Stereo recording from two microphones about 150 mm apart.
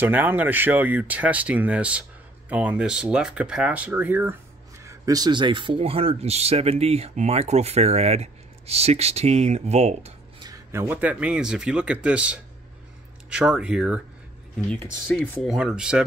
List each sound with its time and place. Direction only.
0.0 s speech: 15° right (ahead or behind)
4.8 s speech: 25° right (ahead or behind); by 10.1 s 45° right (ahead or behind)
10.7 s speech: 15° right (ahead or behind)
15.0 s speech: 15° left (ahead or behind)
15.4 s speech: 5° right (ahead or behind)